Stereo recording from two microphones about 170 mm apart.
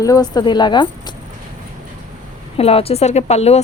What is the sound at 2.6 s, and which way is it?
Speech, 35° left (ahead or behind).